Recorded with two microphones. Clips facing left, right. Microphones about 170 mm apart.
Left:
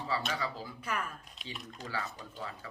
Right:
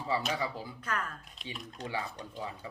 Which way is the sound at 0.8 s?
10° left (ahead or behind).